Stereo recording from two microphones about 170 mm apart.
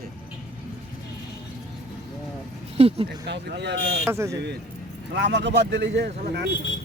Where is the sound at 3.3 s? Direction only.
85° right.